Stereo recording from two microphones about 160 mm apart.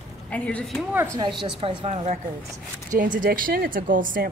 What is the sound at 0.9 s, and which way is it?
Speech, 15° right (ahead or behind).